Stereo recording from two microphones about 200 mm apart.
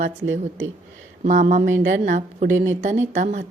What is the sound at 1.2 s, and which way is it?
A woman's voice, 40° right (ahead or behind).